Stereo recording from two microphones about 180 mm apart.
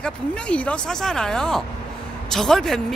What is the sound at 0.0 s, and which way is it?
Speech, 5° left (ahead or behind).